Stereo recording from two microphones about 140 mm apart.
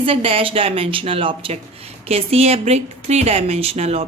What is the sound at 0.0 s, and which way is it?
A woman's voice, 40° right (ahead or behind).